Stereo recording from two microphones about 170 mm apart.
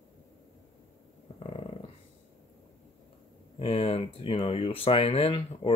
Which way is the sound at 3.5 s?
35° left (ahead or behind).